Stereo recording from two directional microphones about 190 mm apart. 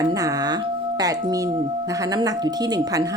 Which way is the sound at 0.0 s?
20° right (ahead or behind).